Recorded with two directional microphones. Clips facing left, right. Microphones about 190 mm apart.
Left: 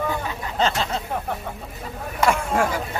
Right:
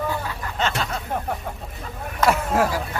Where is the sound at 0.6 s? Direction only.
30° left (ahead or behind).